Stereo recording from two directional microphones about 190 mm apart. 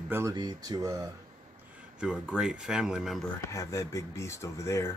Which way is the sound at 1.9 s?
5° right (ahead or behind).